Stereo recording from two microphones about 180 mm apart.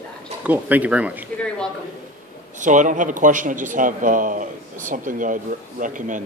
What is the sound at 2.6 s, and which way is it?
Speech, 45° right (ahead or behind).